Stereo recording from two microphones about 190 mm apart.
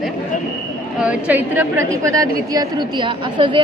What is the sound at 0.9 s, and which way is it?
A woman's voice, 5° right (ahead or behind).